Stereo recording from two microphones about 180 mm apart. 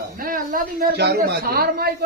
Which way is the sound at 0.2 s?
50° right (ahead or behind).